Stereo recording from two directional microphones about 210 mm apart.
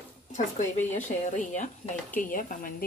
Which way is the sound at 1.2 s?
35° left (ahead or behind).